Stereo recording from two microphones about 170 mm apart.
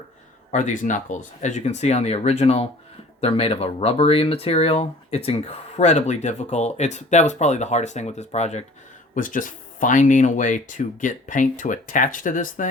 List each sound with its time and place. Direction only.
0.5 s speech: 45° left (ahead or behind)
9.1 s speech: 50° left (ahead or behind)